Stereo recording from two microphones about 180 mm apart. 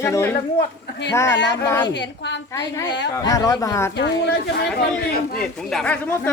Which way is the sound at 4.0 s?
70° left (ahead or behind).